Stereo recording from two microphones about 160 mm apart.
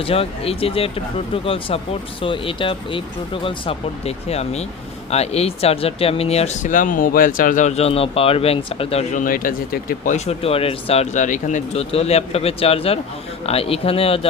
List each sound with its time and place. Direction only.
0.0 s speech: 35° left (ahead or behind)
9.1 s a man's voice: 60° left (ahead or behind)
10.1 s speech: 40° left (ahead or behind)